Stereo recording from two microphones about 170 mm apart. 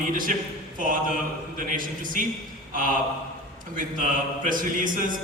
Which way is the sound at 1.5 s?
55° right (ahead or behind).